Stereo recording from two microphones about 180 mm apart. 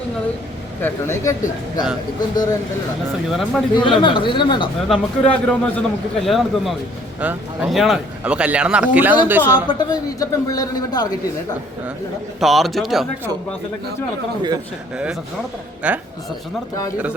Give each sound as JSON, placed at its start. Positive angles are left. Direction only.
{"t": 0.8, "sound": "a man's voice", "side_deg": 10}
{"t": 3.2, "sound": "a man's voice", "side_deg": 0}
{"t": 3.8, "sound": "a man's voice", "side_deg": 25}
{"t": 4.9, "sound": "a man's voice", "side_deg": 5}
{"t": 9.6, "sound": "a man's voice", "side_deg": 25}
{"t": 12.4, "sound": "a man's voice", "side_deg": 0}
{"t": 14.9, "sound": "a man's voice", "side_deg": -5}